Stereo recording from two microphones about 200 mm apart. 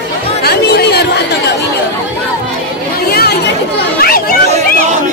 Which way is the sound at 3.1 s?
50° left (ahead or behind).